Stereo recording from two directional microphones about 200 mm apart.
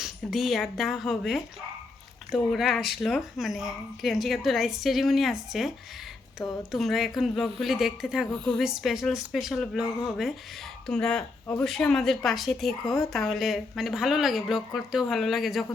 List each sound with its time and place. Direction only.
0.0 s speech: centre (ahead or behind)